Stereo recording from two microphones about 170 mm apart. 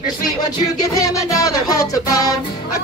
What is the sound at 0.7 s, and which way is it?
Music, 20° left (ahead or behind).